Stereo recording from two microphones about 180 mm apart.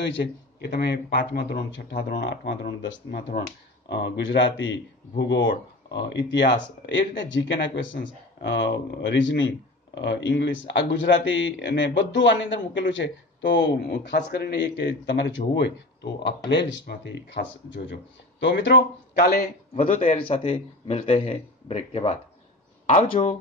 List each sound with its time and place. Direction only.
0.1 s speech: 70° left (ahead or behind); by 4.7 s 90° left
5.2 s speech: 75° left (ahead or behind)
6.9 s speech: 90° left
9.9 s speech: 75° left (ahead or behind)
19.2 s a man's voice: 55° left (ahead or behind)
20.0 s a man's voice: 30° left (ahead or behind)